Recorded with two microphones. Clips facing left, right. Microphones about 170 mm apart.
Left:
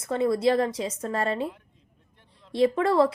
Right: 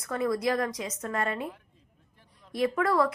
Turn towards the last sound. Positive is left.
turn(degrees=25)  # may be behind; listen again after turning